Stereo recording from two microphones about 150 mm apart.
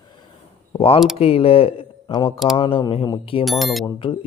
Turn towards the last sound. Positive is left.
turn(degrees=35)  # may be behind; listen again after turning